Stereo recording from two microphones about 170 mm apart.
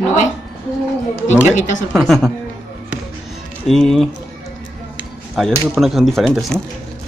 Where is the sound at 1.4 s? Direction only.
45° left (ahead or behind).